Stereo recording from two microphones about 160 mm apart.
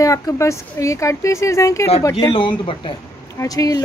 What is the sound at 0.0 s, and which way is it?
Speech, 20° left (ahead or behind).